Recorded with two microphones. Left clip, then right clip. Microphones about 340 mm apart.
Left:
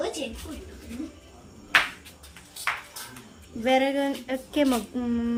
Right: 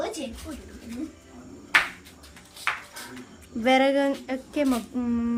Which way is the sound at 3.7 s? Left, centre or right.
Centre.